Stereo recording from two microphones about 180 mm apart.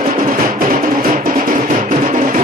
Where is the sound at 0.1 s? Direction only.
55° right (ahead or behind).